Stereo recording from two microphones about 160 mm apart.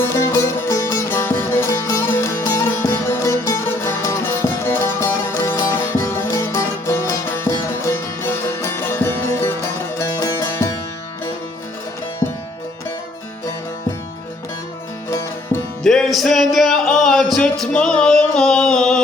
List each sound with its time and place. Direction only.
0.0 s music: 15° left (ahead or behind)
12.2 s music: 25° left (ahead or behind)
15.8 s music: 5° left (ahead or behind)